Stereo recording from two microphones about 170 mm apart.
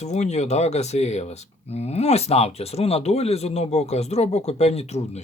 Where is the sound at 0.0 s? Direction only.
40° left (ahead or behind).